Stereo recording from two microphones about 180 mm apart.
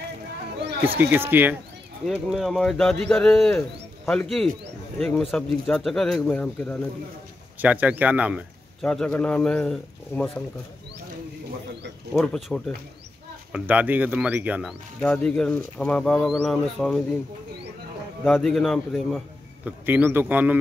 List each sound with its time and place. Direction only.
0.9 s a man's voice: 10° right (ahead or behind); by 6.8 s 5° left (ahead or behind)
7.6 s speech: 10° right (ahead or behind)
8.8 s a man's voice: 5° left (ahead or behind)
12.1 s speech: centre (ahead or behind)
18.2 s a man's voice: 5° left (ahead or behind)
19.9 s speech: 10° right (ahead or behind)